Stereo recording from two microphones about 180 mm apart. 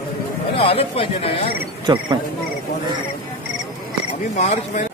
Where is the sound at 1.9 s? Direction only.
20° right (ahead or behind).